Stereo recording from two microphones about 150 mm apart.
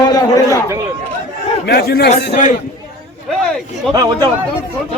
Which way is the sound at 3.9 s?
25° right (ahead or behind).